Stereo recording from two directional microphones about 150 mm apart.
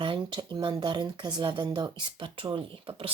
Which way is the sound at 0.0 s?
30° right (ahead or behind).